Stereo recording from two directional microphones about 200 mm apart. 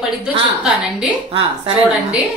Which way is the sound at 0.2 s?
5° right (ahead or behind).